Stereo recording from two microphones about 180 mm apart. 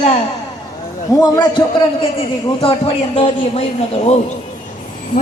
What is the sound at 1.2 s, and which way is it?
A man's voice, 25° left (ahead or behind).